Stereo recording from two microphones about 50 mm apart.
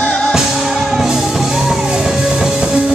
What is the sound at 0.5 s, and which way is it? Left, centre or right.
Music, centre.